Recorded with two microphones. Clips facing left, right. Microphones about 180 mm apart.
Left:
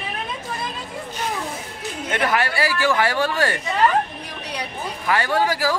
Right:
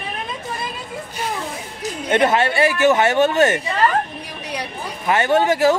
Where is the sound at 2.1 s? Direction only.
25° right (ahead or behind).